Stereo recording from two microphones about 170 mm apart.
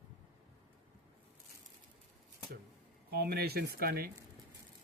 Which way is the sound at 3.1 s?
65° right (ahead or behind).